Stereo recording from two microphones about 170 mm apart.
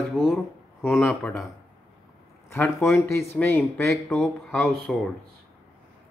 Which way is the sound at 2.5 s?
15° left (ahead or behind).